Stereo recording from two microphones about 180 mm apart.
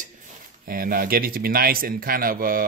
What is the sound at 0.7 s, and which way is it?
Speech, 55° right (ahead or behind).